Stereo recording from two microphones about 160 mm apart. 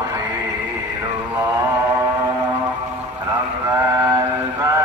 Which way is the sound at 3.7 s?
20° right (ahead or behind).